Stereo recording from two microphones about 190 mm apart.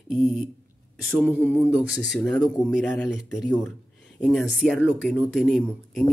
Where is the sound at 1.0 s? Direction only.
Centre (ahead or behind).